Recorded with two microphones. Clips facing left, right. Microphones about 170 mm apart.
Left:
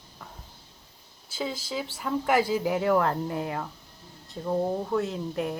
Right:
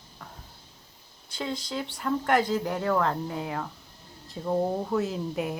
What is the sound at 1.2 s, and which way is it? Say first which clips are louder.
Speech: even; 5° left (ahead or behind).